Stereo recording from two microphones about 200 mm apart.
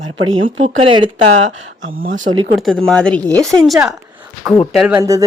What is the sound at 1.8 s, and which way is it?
Speech, 45° right (ahead or behind).